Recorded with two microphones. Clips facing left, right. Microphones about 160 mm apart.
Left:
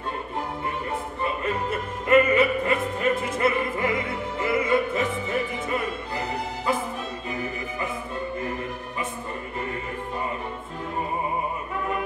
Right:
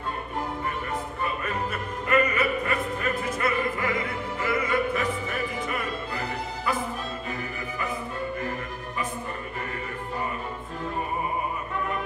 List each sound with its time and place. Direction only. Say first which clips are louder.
1.2 s music: left 4 dB; 25° left (ahead or behind)
4.4 s opera: left 3 dB; 25° left (ahead or behind)